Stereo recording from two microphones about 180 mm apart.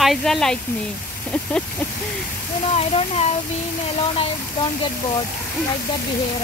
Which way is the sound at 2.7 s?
35° left (ahead or behind).